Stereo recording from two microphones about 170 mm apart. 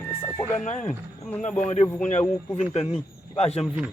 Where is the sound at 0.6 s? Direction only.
45° left (ahead or behind).